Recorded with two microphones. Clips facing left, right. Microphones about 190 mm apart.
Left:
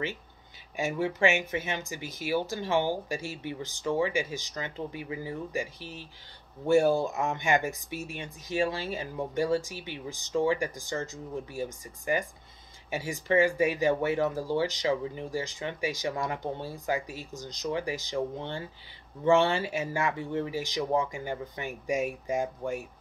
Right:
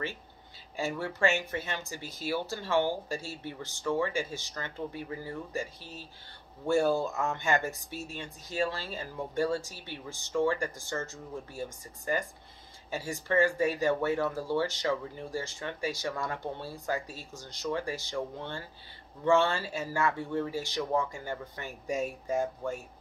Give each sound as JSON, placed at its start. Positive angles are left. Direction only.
{"t": 0.7, "sound": "speech", "side_deg": 15}